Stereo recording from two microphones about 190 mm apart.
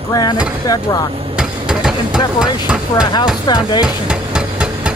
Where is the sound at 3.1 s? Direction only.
25° left (ahead or behind).